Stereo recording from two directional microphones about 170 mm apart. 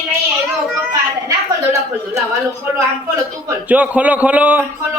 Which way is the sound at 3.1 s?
15° right (ahead or behind).